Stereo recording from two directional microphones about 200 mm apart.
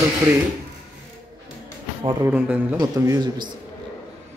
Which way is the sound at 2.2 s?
10° right (ahead or behind).